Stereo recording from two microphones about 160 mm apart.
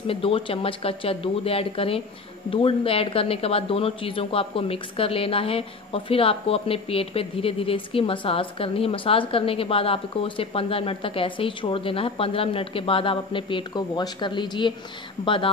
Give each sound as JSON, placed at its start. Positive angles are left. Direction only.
{"t": 0.0, "sound": "speech", "side_deg": 35}